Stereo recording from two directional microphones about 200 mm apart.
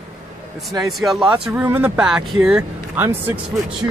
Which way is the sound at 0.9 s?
Centre (ahead or behind).